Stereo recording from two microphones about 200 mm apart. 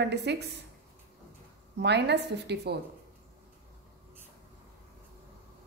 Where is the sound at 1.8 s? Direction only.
60° right (ahead or behind).